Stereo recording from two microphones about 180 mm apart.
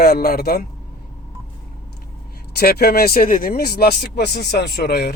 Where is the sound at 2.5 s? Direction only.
60° left (ahead or behind).